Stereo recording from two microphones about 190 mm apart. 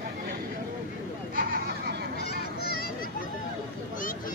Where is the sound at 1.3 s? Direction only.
55° right (ahead or behind).